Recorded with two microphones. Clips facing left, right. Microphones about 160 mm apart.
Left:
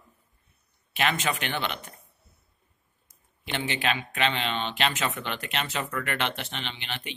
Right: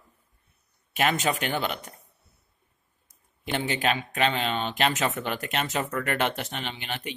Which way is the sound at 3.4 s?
40° right (ahead or behind).